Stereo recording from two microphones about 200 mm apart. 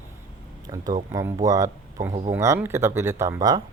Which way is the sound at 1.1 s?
15° right (ahead or behind).